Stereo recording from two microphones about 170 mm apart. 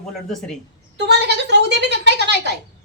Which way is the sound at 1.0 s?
90° right.